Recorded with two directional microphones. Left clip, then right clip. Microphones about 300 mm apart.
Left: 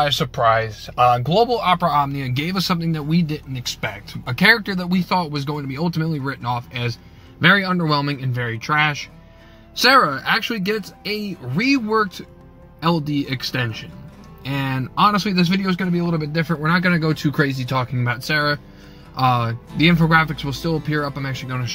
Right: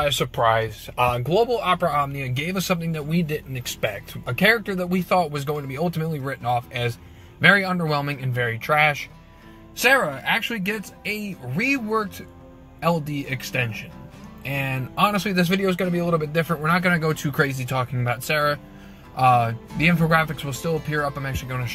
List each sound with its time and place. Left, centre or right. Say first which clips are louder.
0.0 s speech: left 3 dB; centre
1.4 s speech: left 1 dB; centre
9.8 s speech: left 5 dB; centre